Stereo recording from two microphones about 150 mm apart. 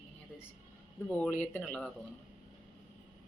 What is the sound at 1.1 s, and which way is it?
Speech, 10° left (ahead or behind).